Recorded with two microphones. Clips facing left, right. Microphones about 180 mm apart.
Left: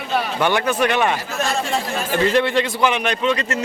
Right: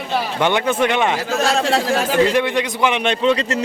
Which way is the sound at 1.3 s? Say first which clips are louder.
Right 5 dB; 90° right.